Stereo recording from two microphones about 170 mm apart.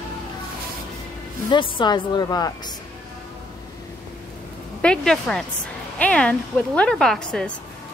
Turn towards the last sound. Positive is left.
turn(degrees=5)  # may be behind; listen again after turning